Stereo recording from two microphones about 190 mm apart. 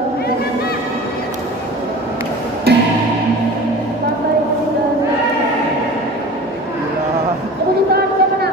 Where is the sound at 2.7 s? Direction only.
55° right (ahead or behind).